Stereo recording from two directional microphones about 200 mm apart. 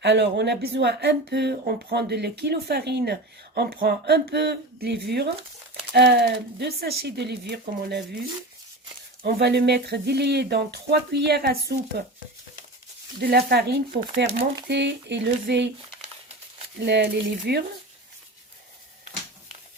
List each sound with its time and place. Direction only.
0.0 s speech: 60° right (ahead or behind)
9.2 s speech: 55° right (ahead or behind)
13.1 s speech: 50° right (ahead or behind)
16.8 s speech: 60° right (ahead or behind)